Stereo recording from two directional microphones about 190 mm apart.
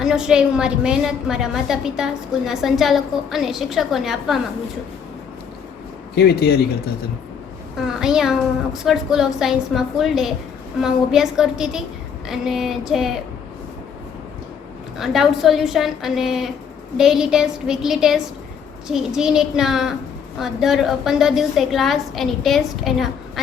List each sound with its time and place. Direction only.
0.0 s a woman's voice: 5° right (ahead or behind)
6.1 s speech: 55° left (ahead or behind)
7.8 s a woman's voice: 5° right (ahead or behind)
14.9 s a woman's voice: centre (ahead or behind)